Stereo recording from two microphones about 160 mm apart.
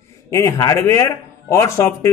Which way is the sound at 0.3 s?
20° left (ahead or behind).